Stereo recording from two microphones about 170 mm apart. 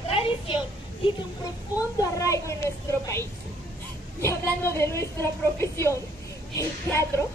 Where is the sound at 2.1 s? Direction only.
20° left (ahead or behind).